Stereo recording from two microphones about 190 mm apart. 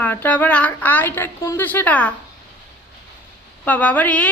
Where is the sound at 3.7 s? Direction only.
10° left (ahead or behind).